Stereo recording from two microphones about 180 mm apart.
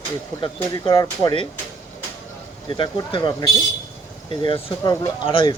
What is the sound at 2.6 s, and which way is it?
Speech, 25° left (ahead or behind).